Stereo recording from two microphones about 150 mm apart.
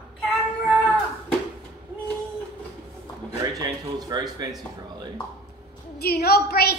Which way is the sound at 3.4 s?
25° right (ahead or behind).